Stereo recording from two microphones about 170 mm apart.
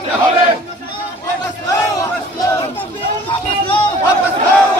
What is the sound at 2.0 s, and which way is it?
Battle cry, 20° left (ahead or behind).